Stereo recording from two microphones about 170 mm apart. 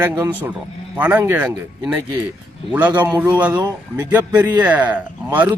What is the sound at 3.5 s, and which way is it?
Speech, 20° right (ahead or behind).